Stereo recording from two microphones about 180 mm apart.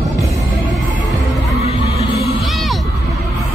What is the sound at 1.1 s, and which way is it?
Heart sounds, centre (ahead or behind).